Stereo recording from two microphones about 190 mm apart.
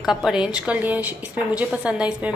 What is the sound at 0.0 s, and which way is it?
A woman's voice, centre (ahead or behind).